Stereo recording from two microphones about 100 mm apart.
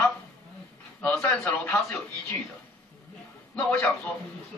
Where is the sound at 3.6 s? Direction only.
15° left (ahead or behind).